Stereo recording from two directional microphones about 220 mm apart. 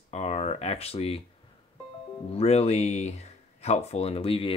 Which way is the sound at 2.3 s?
30° left (ahead or behind).